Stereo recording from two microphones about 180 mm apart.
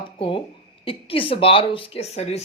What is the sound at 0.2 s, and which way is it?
A woman's voice, 30° left (ahead or behind).